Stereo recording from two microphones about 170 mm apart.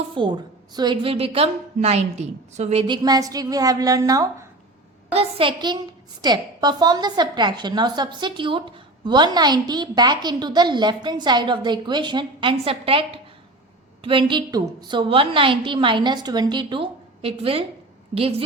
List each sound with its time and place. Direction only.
0.1 s a woman's voice: 25° right (ahead or behind)
2.8 s a woman's voice: 25° right (ahead or behind)
5.1 s a woman's voice: 30° right (ahead or behind)